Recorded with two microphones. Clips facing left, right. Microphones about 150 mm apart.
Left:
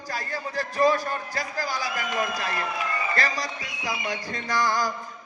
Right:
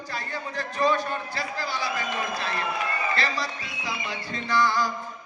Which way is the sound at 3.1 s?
40° left (ahead or behind).